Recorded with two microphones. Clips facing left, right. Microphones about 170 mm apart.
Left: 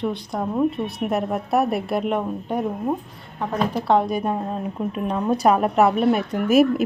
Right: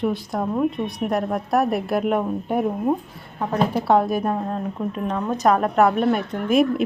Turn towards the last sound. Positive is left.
turn(degrees=5)  # may be behind; listen again after turning